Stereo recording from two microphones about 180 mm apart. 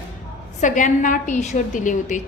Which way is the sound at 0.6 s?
45° left (ahead or behind).